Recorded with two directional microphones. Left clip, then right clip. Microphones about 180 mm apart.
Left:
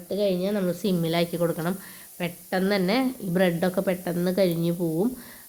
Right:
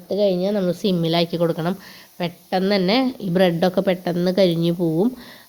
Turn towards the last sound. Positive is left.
turn(degrees=-35)  # may be behind; listen again after turning